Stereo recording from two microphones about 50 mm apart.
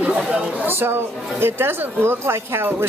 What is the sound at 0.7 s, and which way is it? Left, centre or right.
Speech, right.